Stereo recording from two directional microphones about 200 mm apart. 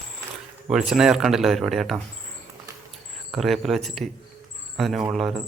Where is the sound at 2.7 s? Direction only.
15° right (ahead or behind).